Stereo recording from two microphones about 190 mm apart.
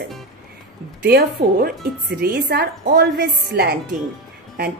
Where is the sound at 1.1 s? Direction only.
55° right (ahead or behind).